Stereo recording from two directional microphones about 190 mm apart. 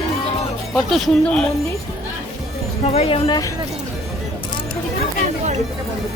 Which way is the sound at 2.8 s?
35° left (ahead or behind).